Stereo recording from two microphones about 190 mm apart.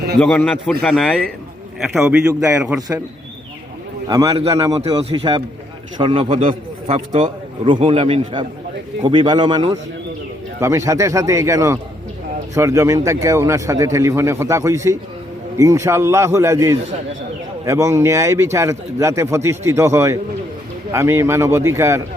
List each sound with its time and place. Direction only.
0.2 s a man's voice: 5° left (ahead or behind)
2.0 s a man's voice: 10° right (ahead or behind)
4.1 s a man's voice: 20° right (ahead or behind)